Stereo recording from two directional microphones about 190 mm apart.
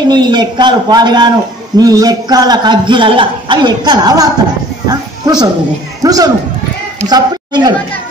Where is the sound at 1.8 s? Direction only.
20° right (ahead or behind).